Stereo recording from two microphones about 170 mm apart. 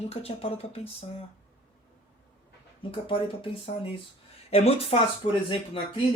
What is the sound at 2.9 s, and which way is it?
Speech, 30° left (ahead or behind).